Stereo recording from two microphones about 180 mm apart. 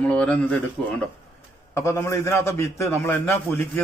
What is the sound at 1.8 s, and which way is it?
A man's voice, 15° left (ahead or behind).